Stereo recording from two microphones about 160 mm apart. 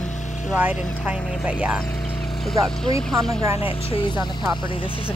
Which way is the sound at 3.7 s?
30° left (ahead or behind).